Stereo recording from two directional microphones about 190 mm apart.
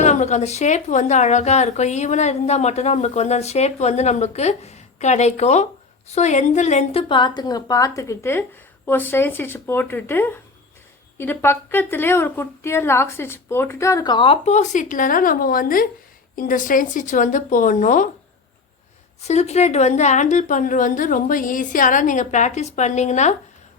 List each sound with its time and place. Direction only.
0.0 s a woman's voice: 40° left (ahead or behind)
7.1 s a woman's voice: 25° left (ahead or behind); by 18.1 s 45° left (ahead or behind)
19.3 s a woman's voice: 35° left (ahead or behind)